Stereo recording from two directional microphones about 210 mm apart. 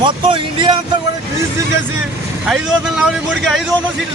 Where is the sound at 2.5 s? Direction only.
5° right (ahead or behind).